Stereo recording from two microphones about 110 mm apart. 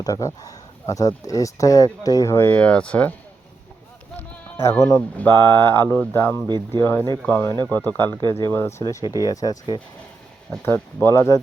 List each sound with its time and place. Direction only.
0.0 s speech: 30° left (ahead or behind); by 3.2 s 10° left (ahead or behind)
4.8 s speech: 30° left (ahead or behind)
5.1 s speech: 20° left (ahead or behind)